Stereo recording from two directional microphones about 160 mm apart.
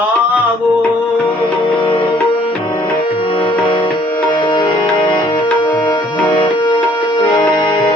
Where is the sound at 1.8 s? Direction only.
30° left (ahead or behind).